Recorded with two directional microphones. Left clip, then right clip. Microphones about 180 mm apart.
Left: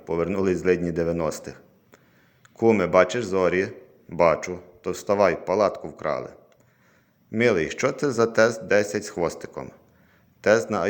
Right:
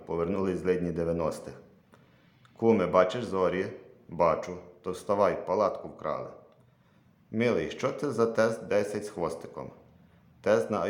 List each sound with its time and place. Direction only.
0.0 s a man's voice: 25° left (ahead or behind)